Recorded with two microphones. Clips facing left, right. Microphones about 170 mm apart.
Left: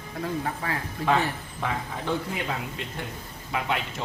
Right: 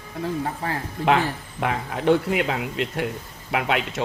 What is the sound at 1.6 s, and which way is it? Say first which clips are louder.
A man's voice: right 6 dB; 75° right (ahead or behind).